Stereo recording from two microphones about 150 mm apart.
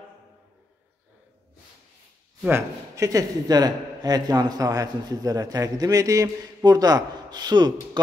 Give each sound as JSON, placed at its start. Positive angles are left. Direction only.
{"t": 2.4, "sound": "a man's voice", "side_deg": -20}